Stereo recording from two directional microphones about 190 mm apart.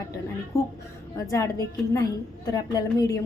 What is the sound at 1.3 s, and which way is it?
A woman's voice, 15° left (ahead or behind).